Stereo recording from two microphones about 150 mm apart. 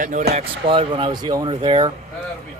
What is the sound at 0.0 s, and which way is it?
Speech, 55° right (ahead or behind).